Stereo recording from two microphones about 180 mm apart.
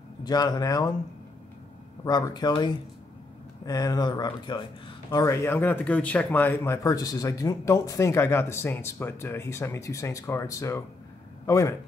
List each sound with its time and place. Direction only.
0.2 s speech: 20° left (ahead or behind)
2.0 s speech: 25° left (ahead or behind)